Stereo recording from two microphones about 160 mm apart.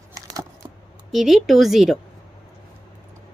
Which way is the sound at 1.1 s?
Centre (ahead or behind).